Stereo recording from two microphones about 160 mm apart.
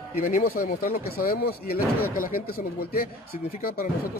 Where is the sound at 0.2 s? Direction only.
65° left (ahead or behind).